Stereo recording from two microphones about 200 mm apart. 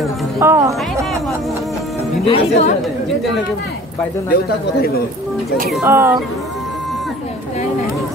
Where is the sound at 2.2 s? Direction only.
30° left (ahead or behind).